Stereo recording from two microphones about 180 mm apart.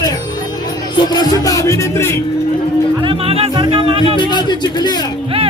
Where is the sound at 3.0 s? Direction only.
35° right (ahead or behind).